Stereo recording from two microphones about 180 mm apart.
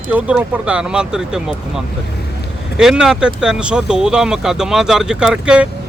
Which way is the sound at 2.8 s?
5° right (ahead or behind).